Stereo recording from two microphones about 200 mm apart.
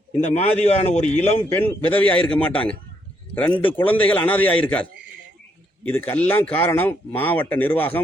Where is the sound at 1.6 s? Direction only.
10° left (ahead or behind).